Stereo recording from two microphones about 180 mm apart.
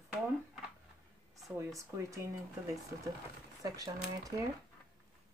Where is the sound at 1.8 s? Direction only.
15° right (ahead or behind).